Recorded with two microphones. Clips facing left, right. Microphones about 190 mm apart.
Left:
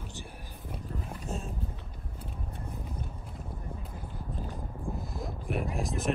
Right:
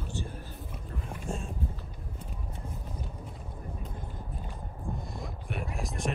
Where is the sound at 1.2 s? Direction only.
Centre (ahead or behind).